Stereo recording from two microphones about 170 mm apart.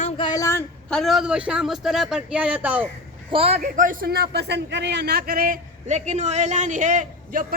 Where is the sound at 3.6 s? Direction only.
50° right (ahead or behind).